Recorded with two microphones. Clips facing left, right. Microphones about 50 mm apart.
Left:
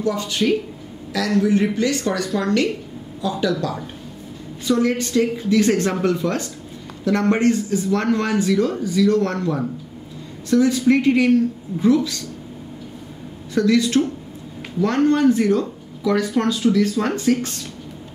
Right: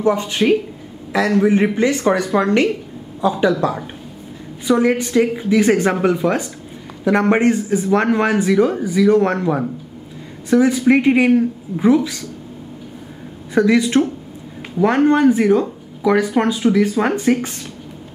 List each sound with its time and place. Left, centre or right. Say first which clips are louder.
0.0 s a man's voice: right 4 dB; right
4.6 s a man's voice: right 4 dB; centre
13.5 s a man's voice: right 3 dB; right